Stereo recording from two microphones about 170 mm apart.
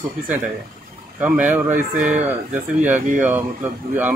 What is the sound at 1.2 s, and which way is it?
Speech, 10° right (ahead or behind).